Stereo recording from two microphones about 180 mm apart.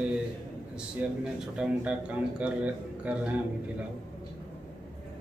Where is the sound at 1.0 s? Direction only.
10° right (ahead or behind).